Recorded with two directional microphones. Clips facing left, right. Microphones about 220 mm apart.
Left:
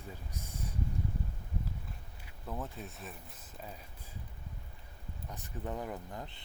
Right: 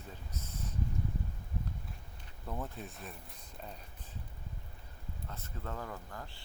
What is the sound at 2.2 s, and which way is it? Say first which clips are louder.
Speech: even; centre (ahead or behind).